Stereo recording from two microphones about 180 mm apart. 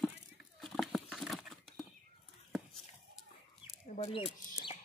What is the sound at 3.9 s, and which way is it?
Bird, 35° left (ahead or behind).